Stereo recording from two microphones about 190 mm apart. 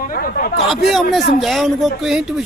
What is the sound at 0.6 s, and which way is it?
Speech, centre (ahead or behind).